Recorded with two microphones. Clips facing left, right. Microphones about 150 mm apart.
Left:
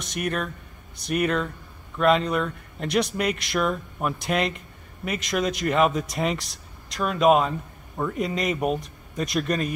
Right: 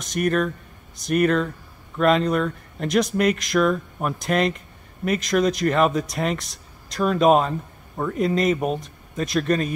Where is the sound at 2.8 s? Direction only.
45° right (ahead or behind).